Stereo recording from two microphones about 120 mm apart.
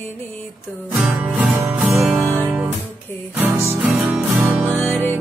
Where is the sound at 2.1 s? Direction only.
20° right (ahead or behind).